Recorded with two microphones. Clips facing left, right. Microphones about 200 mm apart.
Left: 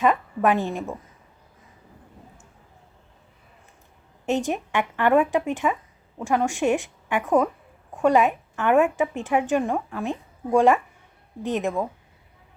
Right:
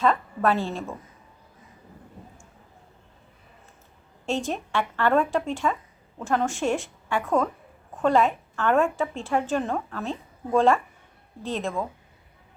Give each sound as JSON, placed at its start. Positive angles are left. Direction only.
{"t": 0.0, "sound": "a woman's voice", "side_deg": 15}
{"t": 4.3, "sound": "a woman's voice", "side_deg": 15}